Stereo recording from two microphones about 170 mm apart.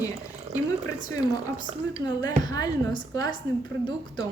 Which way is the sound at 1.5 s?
25° right (ahead or behind).